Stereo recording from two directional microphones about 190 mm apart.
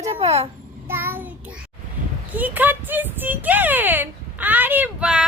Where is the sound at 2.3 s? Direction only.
10° right (ahead or behind).